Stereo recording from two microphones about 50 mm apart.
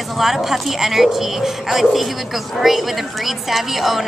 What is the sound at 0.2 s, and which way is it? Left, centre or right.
Speech, centre.